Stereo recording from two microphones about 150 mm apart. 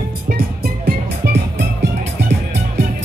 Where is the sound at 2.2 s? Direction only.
90° right.